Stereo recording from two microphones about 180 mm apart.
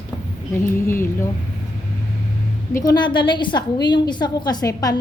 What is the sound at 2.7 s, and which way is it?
A woman's voice, 20° left (ahead or behind).